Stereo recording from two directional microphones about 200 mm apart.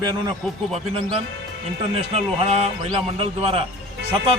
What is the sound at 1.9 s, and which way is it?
A man's voice, 30° right (ahead or behind).